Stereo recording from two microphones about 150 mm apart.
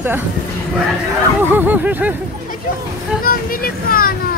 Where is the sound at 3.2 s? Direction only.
75° left (ahead or behind).